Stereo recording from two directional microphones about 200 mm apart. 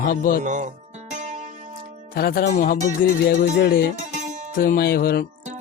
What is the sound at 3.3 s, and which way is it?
Speech, 55° left (ahead or behind).